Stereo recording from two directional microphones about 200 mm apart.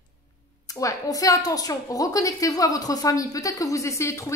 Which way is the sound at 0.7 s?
15° left (ahead or behind).